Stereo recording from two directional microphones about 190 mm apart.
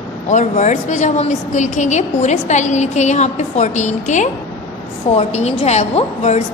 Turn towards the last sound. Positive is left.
turn(degrees=35)  # may be behind; listen again after turning